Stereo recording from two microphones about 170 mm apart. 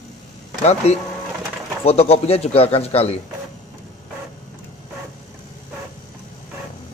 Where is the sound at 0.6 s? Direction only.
40° left (ahead or behind).